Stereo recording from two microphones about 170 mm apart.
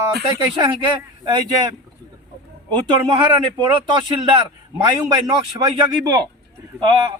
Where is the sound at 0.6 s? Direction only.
25° right (ahead or behind).